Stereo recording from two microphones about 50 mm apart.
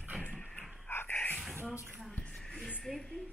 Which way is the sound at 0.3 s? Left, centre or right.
Centre.